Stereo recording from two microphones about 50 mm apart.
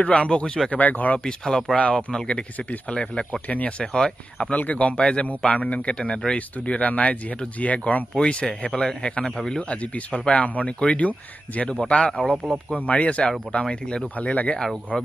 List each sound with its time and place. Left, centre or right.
0.0 s a man's voice: centre
0.7 s speech: left
1.2 s a man's voice: centre
3.3 s a man's voice: left
3.8 s speech: centre
4.6 s a man's voice: left
11.8 s speech: centre
12.7 s a man's voice: left
14.1 s speech: left